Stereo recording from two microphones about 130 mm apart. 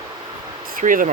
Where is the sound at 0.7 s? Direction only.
90° right.